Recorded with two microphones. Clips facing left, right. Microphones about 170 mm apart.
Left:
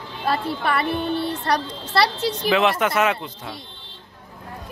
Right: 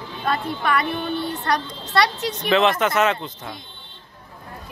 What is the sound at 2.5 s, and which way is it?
Speech, 5° left (ahead or behind).